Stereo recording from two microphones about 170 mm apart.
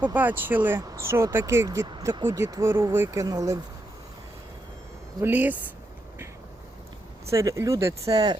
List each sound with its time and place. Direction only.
0.0 s speech: 10° right (ahead or behind)
5.2 s speech: 10° right (ahead or behind)
7.3 s speech: 15° right (ahead or behind)